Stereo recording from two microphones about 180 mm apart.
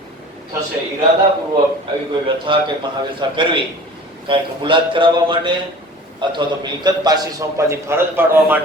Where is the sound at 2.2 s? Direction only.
30° right (ahead or behind).